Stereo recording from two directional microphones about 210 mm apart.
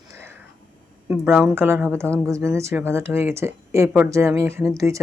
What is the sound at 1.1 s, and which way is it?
Speech, 5° right (ahead or behind).